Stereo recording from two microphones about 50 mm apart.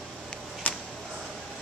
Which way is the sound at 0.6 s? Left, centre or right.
Left.